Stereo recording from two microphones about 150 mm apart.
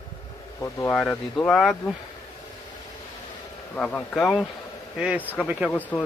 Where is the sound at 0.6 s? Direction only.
20° left (ahead or behind).